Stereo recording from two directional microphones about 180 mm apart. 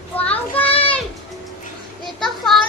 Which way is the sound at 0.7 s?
30° left (ahead or behind).